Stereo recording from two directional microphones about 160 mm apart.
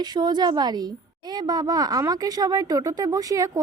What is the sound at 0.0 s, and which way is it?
Speech, 25° right (ahead or behind).